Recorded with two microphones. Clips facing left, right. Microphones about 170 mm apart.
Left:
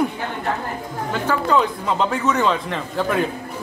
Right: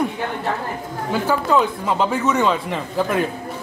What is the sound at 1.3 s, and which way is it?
Speech, 5° right (ahead or behind).